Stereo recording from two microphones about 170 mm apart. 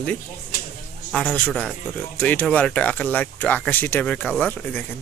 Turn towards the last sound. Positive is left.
turn(degrees=5)  # may be behind; listen again after turning